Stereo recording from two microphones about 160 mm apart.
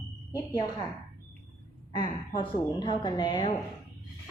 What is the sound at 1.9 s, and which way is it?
A woman's voice, 30° left (ahead or behind).